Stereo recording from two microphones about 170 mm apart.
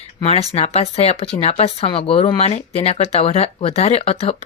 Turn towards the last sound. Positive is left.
turn(degrees=35)  # may be behind; listen again after turning